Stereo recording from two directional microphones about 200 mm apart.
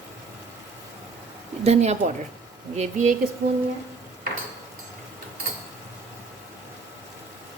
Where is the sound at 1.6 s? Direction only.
35° right (ahead or behind).